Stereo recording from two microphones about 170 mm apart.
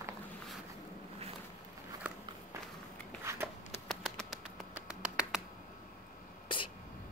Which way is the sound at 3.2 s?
15° right (ahead or behind).